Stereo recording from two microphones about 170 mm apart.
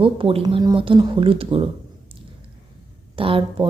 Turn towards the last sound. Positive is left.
turn(degrees=-30)  # may be behind; listen again after turning